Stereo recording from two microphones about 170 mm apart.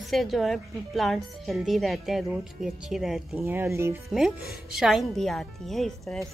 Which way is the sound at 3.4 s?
15° right (ahead or behind).